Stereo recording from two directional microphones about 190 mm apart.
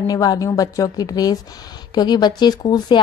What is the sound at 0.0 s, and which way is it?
Speech, 20° left (ahead or behind).